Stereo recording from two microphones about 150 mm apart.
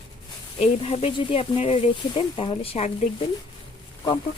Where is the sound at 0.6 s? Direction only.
40° left (ahead or behind).